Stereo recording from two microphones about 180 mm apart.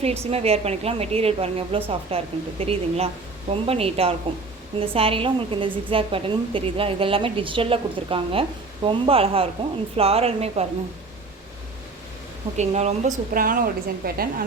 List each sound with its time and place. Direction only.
0.0 s a woman's voice: 35° right (ahead or behind)
12.5 s a woman's voice: 40° right (ahead or behind); by 14.4 s 55° right (ahead or behind)